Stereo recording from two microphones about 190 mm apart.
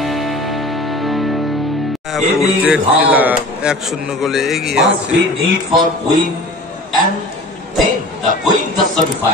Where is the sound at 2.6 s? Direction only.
10° right (ahead or behind).